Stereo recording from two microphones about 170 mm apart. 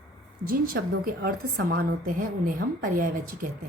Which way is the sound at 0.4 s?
55° right (ahead or behind).